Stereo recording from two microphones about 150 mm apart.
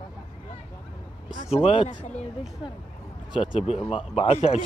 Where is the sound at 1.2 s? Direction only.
55° left (ahead or behind).